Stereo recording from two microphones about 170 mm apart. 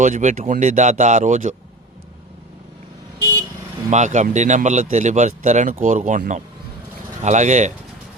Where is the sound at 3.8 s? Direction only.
45° right (ahead or behind).